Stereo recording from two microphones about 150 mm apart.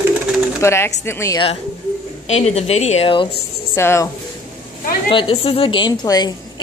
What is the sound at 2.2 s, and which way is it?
Speech, 45° left (ahead or behind).